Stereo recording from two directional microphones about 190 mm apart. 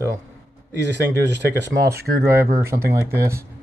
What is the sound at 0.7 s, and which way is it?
Speech, 65° right (ahead or behind).